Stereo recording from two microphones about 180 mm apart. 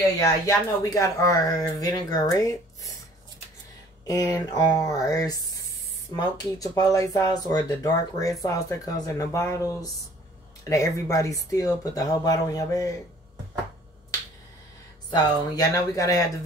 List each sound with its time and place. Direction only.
0.2 s speech: 15° left (ahead or behind)
4.1 s speech: 20° left (ahead or behind)
15.0 s speech: 20° left (ahead or behind)